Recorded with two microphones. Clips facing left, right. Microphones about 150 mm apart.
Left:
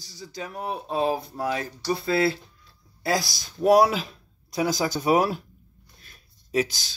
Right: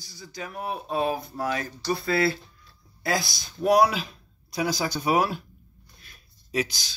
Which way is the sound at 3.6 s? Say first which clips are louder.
Left 2 dB; 45° left (ahead or behind).